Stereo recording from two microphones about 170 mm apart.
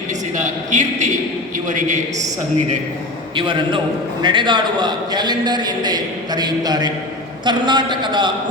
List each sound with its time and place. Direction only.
0.3 s a man's voice: 45° right (ahead or behind)
3.3 s a man's voice: 25° right (ahead or behind)